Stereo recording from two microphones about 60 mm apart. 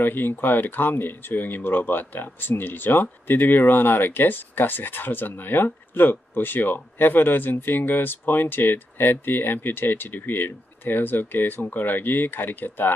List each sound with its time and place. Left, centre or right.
0.0 s speech: left